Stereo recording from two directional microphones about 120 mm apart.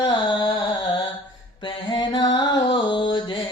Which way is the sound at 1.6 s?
40° left (ahead or behind).